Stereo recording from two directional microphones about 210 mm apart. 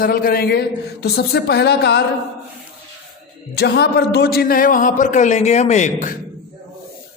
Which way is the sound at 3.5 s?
50° left (ahead or behind).